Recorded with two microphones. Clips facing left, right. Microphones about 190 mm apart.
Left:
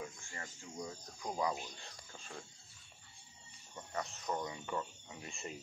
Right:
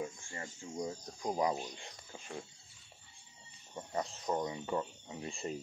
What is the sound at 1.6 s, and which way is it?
Speech, 15° right (ahead or behind).